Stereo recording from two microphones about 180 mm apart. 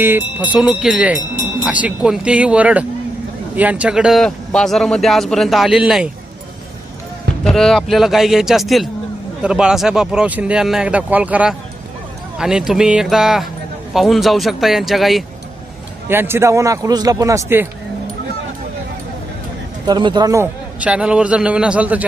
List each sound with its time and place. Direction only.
0.0 s a man's voice: 10° right (ahead or behind)
7.4 s a man's voice: centre (ahead or behind)
16.0 s a man's voice: 10° right (ahead or behind)
19.8 s a man's voice: 25° right (ahead or behind); by 22.0 s 10° right (ahead or behind)